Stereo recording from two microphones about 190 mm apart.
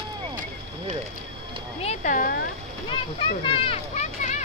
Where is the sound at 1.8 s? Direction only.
45° left (ahead or behind).